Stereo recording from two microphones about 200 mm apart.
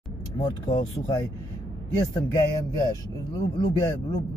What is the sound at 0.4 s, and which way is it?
Speech, 20° left (ahead or behind).